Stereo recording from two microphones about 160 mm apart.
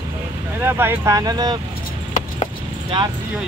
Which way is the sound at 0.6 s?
15° right (ahead or behind).